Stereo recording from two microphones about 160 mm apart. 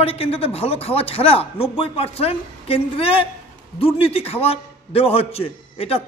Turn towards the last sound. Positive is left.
turn(degrees=35)  # may be behind; listen again after turning